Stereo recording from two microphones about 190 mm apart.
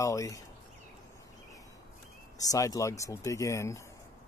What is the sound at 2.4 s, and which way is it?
Speech, 20° left (ahead or behind).